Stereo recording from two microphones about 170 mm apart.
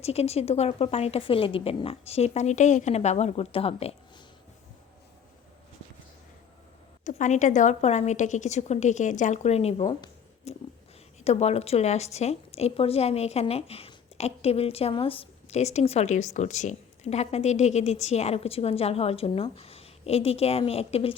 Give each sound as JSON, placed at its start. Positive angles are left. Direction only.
{"t": 0.0, "sound": "a woman's voice", "side_deg": 40}
{"t": 7.0, "sound": "a woman's voice", "side_deg": 45}
{"t": 10.5, "sound": "a sound", "side_deg": 40}
{"t": 11.2, "sound": "a woman's voice", "side_deg": 40}